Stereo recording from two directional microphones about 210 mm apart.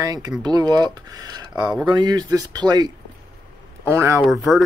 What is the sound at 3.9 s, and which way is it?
Speech, 10° right (ahead or behind).